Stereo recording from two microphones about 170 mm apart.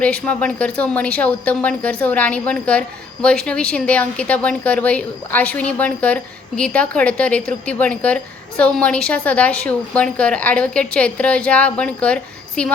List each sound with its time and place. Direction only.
0.0 s speech: 10° left (ahead or behind)